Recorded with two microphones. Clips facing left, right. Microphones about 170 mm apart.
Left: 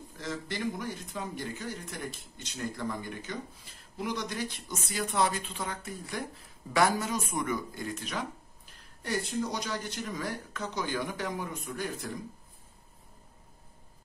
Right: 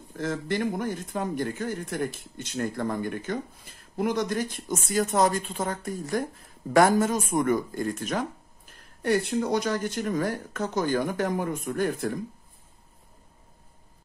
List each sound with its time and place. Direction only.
0.1 s speech: 55° right (ahead or behind)